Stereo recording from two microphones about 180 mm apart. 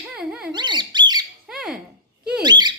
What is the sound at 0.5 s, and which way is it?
Bird, 25° right (ahead or behind).